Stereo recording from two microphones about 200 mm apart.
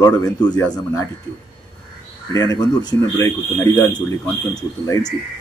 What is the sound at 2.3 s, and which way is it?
Speech, 20° left (ahead or behind).